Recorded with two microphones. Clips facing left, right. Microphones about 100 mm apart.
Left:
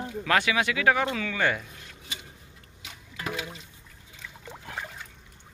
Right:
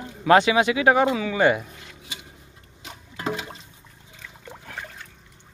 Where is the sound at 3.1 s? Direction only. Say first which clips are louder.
Right 5 dB; 25° right (ahead or behind).